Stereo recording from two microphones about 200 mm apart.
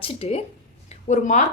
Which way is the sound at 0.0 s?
30° left (ahead or behind).